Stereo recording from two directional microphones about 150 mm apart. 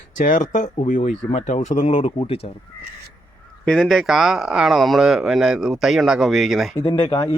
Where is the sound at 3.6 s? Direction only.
Centre (ahead or behind).